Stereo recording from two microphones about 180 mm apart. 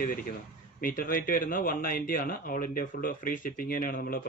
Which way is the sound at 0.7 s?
55° left (ahead or behind).